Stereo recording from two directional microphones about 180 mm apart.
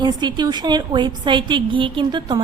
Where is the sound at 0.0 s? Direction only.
25° right (ahead or behind).